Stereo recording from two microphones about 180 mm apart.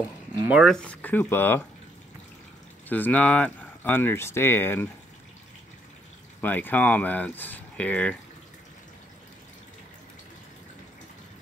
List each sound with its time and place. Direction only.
0.4 s speech: 5° right (ahead or behind); by 1.6 s 10° left (ahead or behind)
2.9 s speech: 10° left (ahead or behind)
6.4 s speech: 10° left (ahead or behind)